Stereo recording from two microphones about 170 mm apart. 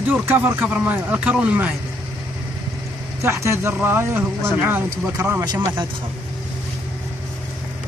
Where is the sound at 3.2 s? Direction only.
15° right (ahead or behind).